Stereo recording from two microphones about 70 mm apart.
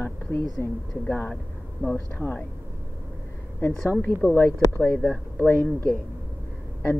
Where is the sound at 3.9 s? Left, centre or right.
Left.